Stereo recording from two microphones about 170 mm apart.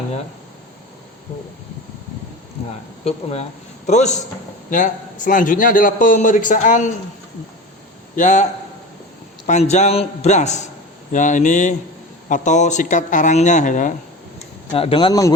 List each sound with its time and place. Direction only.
3.0 s a man's voice: 35° left (ahead or behind)
8.1 s a man's voice: 45° left (ahead or behind)
9.5 s a man's voice: 40° left (ahead or behind)
14.7 s speech: 35° left (ahead or behind)